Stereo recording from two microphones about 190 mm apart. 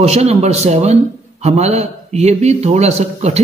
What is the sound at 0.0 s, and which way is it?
A man's voice, 35° right (ahead or behind).